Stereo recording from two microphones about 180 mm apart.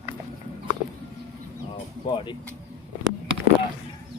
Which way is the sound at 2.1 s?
25° left (ahead or behind).